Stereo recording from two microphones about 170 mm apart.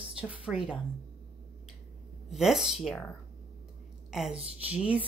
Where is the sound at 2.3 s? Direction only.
Centre (ahead or behind).